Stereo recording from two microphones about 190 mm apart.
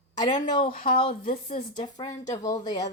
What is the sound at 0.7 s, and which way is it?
Speech, 50° left (ahead or behind).